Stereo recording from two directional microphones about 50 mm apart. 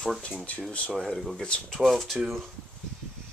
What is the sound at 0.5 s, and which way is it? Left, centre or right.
Speech, left.